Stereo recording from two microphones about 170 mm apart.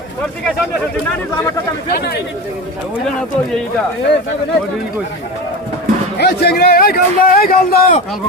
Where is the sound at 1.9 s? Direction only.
70° left (ahead or behind).